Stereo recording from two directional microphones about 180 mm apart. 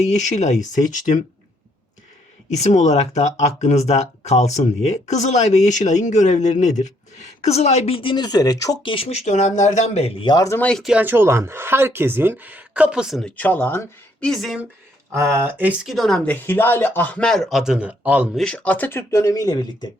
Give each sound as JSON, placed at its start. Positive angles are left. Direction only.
{"t": 0.0, "sound": "speech", "side_deg": 40}
{"t": 2.5, "sound": "speech", "side_deg": 40}
{"t": 10.7, "sound": "speech", "side_deg": 0}
{"t": 13.3, "sound": "speech", "side_deg": 10}
{"t": 15.1, "sound": "speech", "side_deg": -15}
{"t": 18.3, "sound": "speech", "side_deg": 5}